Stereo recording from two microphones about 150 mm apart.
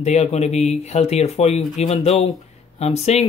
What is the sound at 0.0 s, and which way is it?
Speech, 45° left (ahead or behind).